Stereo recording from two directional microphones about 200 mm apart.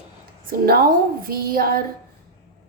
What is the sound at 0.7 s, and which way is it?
A woman's voice, 45° right (ahead or behind).